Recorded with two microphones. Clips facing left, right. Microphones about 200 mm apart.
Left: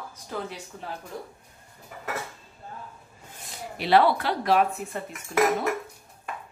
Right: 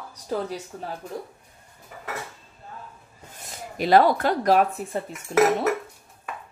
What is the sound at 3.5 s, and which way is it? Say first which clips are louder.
Speech: right 3 dB; 45° right (ahead or behind).